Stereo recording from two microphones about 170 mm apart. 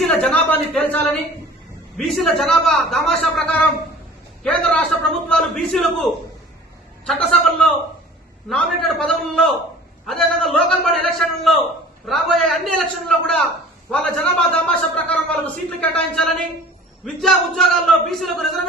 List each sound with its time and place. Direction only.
0.1 s a man's voice: 5° left (ahead or behind)